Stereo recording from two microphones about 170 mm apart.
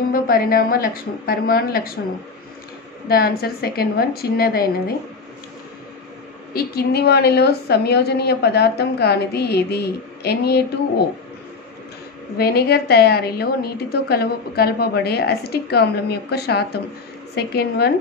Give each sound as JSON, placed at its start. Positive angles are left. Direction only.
{"t": 0.1, "sound": "a woman's voice", "side_deg": 60}
{"t": 3.1, "sound": "a woman's voice", "side_deg": 65}
{"t": 6.5, "sound": "a woman's voice", "side_deg": 65}
{"t": 12.4, "sound": "a woman's voice", "side_deg": 65}